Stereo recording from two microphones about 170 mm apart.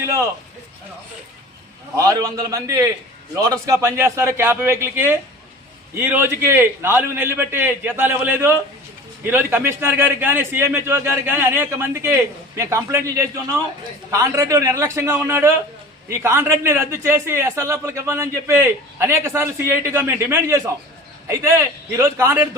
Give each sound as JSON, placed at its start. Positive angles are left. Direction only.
{"t": 0.0, "sound": "a man's voice", "side_deg": -15}
{"t": 2.0, "sound": "a man's voice", "side_deg": -20}